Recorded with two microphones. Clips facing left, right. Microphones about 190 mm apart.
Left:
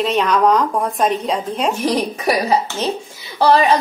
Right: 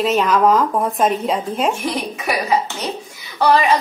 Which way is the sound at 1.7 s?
35° left (ahead or behind).